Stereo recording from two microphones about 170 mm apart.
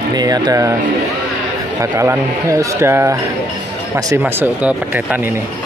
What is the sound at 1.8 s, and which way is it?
Speech, 15° right (ahead or behind).